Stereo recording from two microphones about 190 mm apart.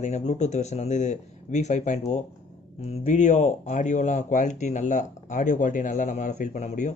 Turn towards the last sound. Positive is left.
turn(degrees=40)  # may be behind; listen again after turning